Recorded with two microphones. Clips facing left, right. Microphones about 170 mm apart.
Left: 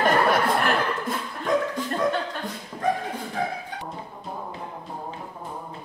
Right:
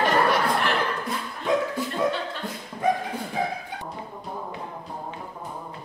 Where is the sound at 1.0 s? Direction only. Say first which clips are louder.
Even; 5° right (ahead or behind).